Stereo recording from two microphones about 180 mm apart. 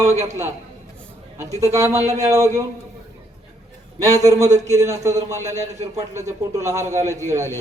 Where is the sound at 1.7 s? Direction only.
15° right (ahead or behind).